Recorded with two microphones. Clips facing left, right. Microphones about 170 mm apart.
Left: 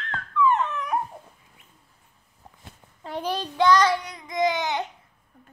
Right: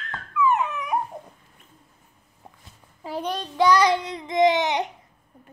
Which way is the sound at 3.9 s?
25° right (ahead or behind).